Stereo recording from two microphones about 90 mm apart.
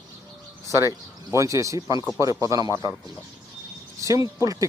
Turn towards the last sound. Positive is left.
turn(degrees=-40)  # may be behind; listen again after turning